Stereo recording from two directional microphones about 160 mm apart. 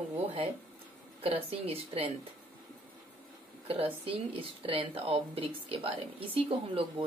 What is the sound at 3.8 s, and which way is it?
Speech, 35° right (ahead or behind).